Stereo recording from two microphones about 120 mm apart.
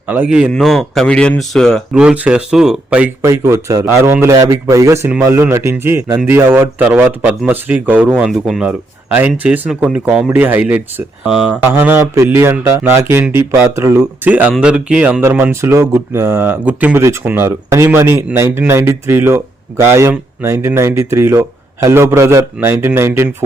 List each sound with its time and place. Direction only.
0.1 s speech: 10° right (ahead or behind)
0.5 s speech: centre (ahead or behind)
1.9 s speech: 5° right (ahead or behind)
3.2 s speech: 25° right (ahead or behind)
8.3 s speech: 5° right (ahead or behind); by 13.9 s 25° right (ahead or behind)
13.9 s speech: 10° right (ahead or behind)